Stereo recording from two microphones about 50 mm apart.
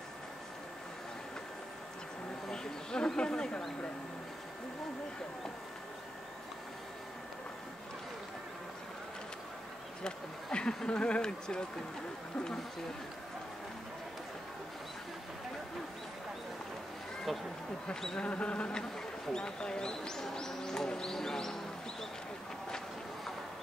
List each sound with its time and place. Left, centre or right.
2.4 s a sound: centre
10.0 s speech: centre
18.0 s speech: centre